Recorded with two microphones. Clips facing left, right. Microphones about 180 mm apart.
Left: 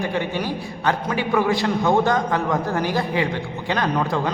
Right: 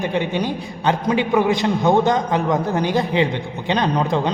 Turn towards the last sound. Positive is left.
turn(degrees=-20)  # may be behind; listen again after turning